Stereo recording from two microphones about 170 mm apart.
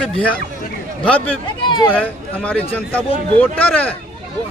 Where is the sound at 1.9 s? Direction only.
10° left (ahead or behind).